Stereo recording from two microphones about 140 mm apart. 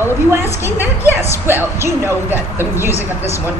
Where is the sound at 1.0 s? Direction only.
15° right (ahead or behind).